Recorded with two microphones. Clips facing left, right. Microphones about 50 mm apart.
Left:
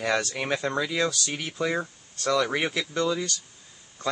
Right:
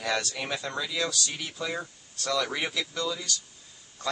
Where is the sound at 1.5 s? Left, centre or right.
Left.